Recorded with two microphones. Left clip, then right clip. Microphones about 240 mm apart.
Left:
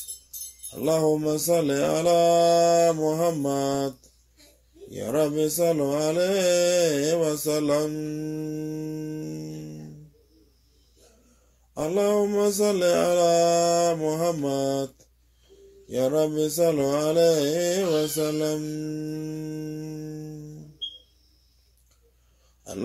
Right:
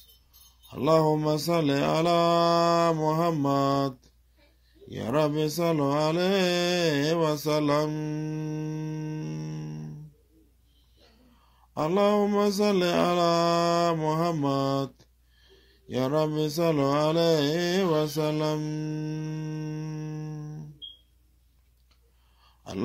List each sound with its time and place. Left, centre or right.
0.7 s speech: right
4.9 s speech: right
11.7 s speech: right
22.7 s a sound: right